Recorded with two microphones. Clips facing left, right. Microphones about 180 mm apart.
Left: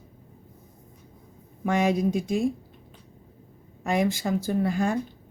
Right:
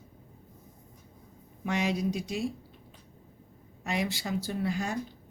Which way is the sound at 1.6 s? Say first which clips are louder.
Left 6 dB; 50° left (ahead or behind).